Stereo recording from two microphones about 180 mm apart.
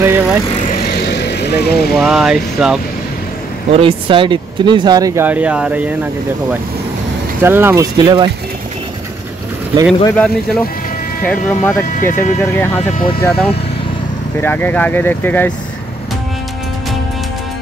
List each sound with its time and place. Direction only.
0.0 s vehicle: 10° right (ahead or behind)
1.1 s vehicle: 70° left (ahead or behind)
2.0 s speech: 5° right (ahead or behind)
3.7 s speech: 30° right (ahead or behind); by 5.9 s 5° right (ahead or behind)
7.4 s speech: 10° right (ahead or behind)
10.0 s speech: 5° left (ahead or behind)